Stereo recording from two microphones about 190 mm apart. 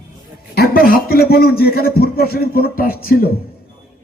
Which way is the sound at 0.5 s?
55° left (ahead or behind).